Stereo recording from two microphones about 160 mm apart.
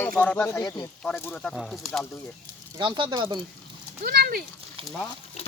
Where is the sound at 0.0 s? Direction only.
10° left (ahead or behind).